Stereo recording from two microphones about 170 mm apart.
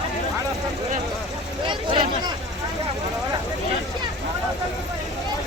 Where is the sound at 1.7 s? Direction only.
30° right (ahead or behind).